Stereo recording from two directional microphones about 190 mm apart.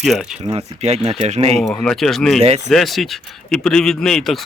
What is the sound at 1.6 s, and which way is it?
Speech, 5° left (ahead or behind).